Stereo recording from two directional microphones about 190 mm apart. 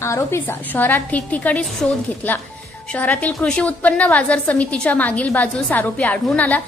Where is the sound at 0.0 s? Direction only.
15° left (ahead or behind).